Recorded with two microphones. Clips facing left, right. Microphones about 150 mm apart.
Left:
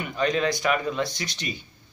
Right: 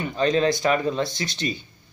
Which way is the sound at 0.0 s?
30° right (ahead or behind).